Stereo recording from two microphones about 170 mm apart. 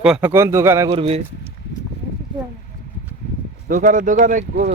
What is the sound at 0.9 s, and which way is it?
Speech, 35° right (ahead or behind).